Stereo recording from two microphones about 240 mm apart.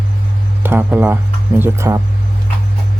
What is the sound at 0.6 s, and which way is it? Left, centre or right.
Speech, centre.